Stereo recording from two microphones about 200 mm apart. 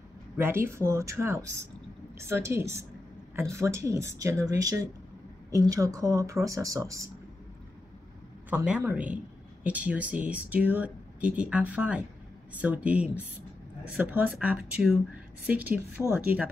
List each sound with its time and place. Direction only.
0.4 s a man's voice: 10° right (ahead or behind)
8.5 s a man's voice: 5° right (ahead or behind)